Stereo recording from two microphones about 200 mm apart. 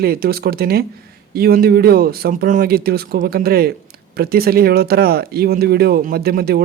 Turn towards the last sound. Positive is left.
turn(degrees=-50)  # may be behind; listen again after turning